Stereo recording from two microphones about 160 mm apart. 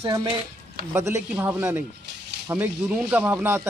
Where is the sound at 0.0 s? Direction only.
30° right (ahead or behind).